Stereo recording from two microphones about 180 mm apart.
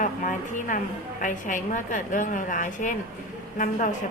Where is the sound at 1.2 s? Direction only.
45° left (ahead or behind).